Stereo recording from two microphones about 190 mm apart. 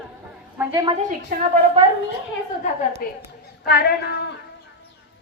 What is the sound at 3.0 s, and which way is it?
Speech, 50° left (ahead or behind).